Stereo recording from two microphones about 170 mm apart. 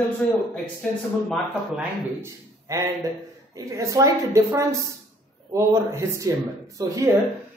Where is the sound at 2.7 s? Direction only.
20° right (ahead or behind).